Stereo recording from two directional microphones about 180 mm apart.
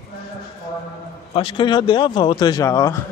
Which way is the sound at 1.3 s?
30° left (ahead or behind).